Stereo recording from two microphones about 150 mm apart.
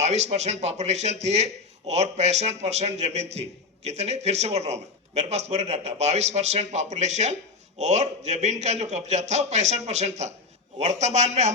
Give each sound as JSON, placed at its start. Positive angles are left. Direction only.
{"t": 0.0, "sound": "a man's voice", "side_deg": -50}